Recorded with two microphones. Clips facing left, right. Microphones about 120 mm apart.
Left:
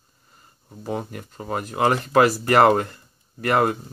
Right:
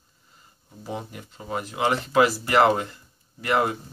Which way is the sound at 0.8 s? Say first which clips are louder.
Left 5 dB; 50° left (ahead or behind).